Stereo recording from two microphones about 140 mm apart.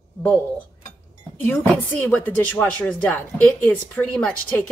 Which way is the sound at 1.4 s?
10° left (ahead or behind).